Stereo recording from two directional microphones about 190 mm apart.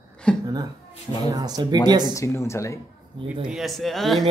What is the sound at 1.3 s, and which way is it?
Speech, 20° right (ahead or behind).